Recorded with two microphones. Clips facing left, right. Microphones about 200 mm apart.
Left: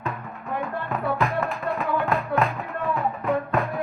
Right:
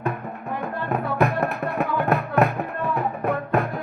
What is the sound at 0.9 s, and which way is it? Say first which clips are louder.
Music: right 3 dB; 65° right (ahead or behind).